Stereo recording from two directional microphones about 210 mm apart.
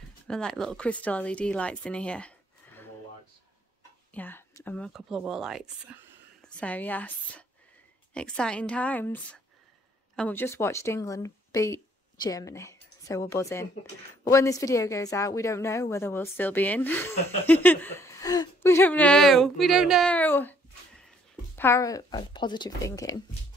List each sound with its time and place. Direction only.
0.3 s speech: 5° left (ahead or behind)
4.1 s a woman's voice: 10° left (ahead or behind)